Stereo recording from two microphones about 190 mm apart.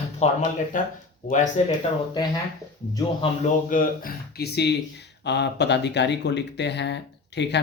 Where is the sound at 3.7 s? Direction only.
50° left (ahead or behind); by 7.6 s 65° left (ahead or behind).